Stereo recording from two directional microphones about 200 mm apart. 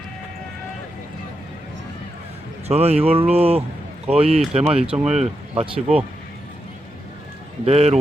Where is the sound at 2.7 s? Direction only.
30° right (ahead or behind).